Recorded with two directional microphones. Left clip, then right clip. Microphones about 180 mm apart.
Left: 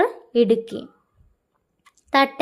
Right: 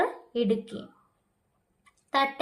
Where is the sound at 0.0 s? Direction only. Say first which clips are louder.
Left 9 dB; 35° left (ahead or behind).